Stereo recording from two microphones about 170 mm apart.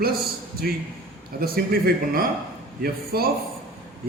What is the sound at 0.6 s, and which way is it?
Speech, 65° right (ahead or behind).